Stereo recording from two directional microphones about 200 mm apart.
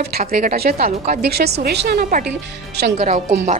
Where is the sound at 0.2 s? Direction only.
45° right (ahead or behind).